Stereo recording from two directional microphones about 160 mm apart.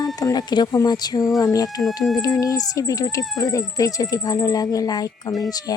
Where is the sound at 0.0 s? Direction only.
25° left (ahead or behind).